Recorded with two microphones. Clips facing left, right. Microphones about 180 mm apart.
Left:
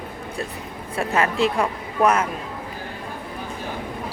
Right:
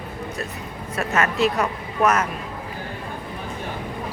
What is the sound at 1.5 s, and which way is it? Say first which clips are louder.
Speech: left 1 dB; 10° left (ahead or behind).